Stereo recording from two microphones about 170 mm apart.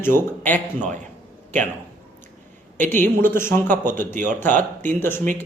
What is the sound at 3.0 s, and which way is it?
Speech, 15° left (ahead or behind).